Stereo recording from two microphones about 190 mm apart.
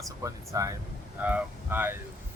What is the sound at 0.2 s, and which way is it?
Speech, 15° right (ahead or behind).